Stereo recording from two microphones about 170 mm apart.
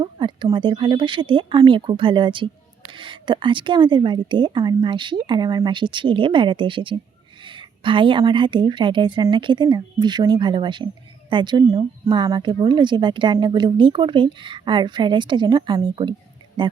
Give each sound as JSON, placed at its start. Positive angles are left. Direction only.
{"t": 0.0, "sound": "speech", "side_deg": -25}